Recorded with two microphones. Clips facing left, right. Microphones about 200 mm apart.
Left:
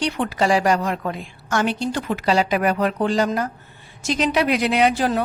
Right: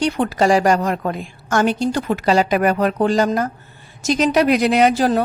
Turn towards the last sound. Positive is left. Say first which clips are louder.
# right 4 dB
turn(degrees=-40)  # may be behind; listen again after turning